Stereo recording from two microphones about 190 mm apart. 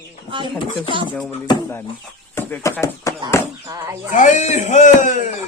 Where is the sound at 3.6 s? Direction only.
15° right (ahead or behind).